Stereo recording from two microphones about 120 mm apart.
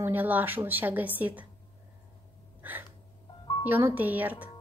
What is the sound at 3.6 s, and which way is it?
Speech, 15° right (ahead or behind).